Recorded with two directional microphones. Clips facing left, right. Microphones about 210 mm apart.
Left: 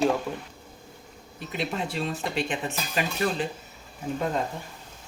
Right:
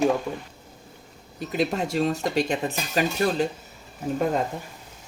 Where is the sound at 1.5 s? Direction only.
45° right (ahead or behind).